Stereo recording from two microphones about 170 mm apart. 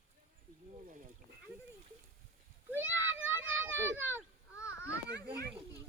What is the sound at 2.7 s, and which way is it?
Children playing, 10° right (ahead or behind).